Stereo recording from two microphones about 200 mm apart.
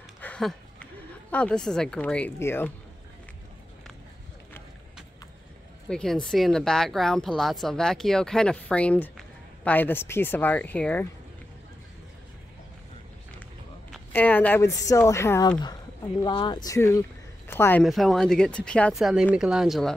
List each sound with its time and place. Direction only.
0.2 s a sound: 5° left (ahead or behind)
1.3 s speech: 5° left (ahead or behind)
5.9 s speech: 5° left (ahead or behind)
13.8 s speech: 5° left (ahead or behind)
17.8 s speech: centre (ahead or behind)